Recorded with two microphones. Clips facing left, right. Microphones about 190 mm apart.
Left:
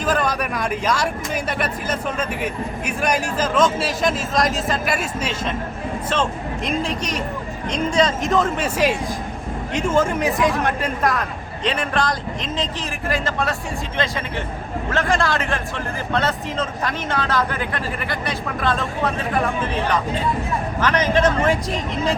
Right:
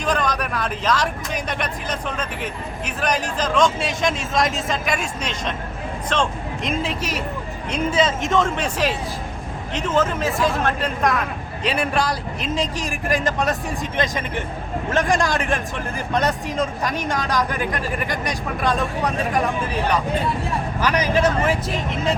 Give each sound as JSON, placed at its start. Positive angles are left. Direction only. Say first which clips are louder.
{"t": 0.0, "sound": "speech", "louder": "left 1 dB", "side_deg": 5}
{"t": 6.7, "sound": "speech", "louder": "left 1 dB", "side_deg": -5}
{"t": 11.6, "sound": "speech", "louder": "even", "side_deg": -10}